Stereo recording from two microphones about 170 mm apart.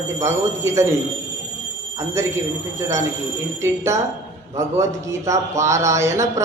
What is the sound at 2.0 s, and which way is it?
A man's voice, 15° right (ahead or behind).